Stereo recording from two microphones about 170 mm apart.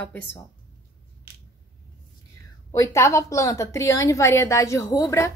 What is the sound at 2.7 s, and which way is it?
A woman's voice, 20° left (ahead or behind).